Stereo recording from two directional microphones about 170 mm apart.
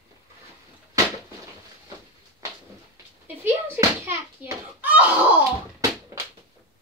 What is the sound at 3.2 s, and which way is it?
Bouncing, 10° right (ahead or behind).